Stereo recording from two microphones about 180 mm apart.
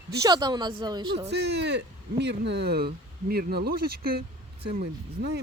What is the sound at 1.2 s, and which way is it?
Speech, 70° right (ahead or behind).